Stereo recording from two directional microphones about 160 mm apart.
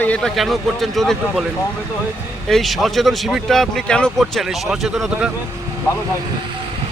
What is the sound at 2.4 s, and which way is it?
Speech, centre (ahead or behind).